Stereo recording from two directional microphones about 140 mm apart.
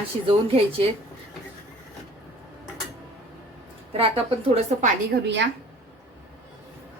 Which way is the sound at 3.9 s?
45° right (ahead or behind).